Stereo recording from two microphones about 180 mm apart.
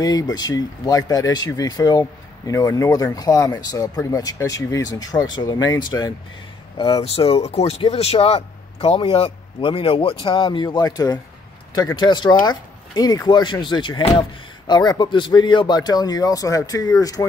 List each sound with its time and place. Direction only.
0.0 s speech: 20° left (ahead or behind)